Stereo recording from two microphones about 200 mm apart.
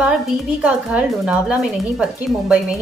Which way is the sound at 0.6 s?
5° right (ahead or behind).